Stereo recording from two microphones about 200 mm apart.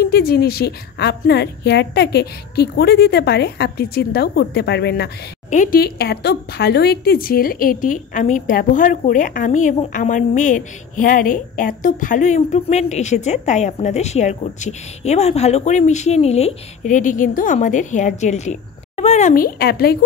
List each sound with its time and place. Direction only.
0.0 s a woman's voice: 50° left (ahead or behind)
5.5 s speech: 40° left (ahead or behind)